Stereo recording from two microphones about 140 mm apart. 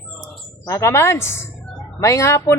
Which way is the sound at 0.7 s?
20° left (ahead or behind).